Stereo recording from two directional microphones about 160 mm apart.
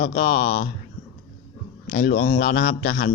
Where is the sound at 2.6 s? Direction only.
90° left.